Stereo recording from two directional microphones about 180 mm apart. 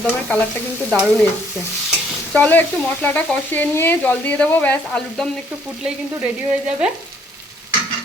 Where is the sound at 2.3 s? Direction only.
10° left (ahead or behind).